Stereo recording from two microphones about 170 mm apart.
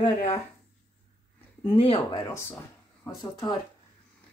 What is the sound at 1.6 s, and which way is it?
Speech, 35° left (ahead or behind).